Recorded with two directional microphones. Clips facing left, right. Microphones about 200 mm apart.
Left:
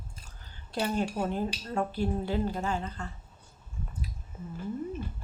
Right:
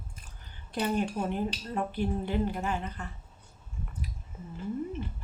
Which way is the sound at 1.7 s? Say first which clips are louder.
Left 1 dB; 15° right (ahead or behind).